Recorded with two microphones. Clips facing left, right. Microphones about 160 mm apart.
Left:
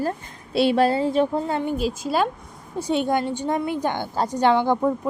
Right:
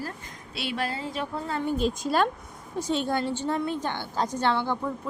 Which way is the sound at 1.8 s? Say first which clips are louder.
Left 2 dB; 5° left (ahead or behind).